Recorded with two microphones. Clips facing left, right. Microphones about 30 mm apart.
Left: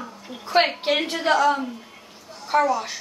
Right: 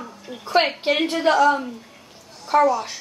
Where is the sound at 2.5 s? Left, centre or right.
Centre.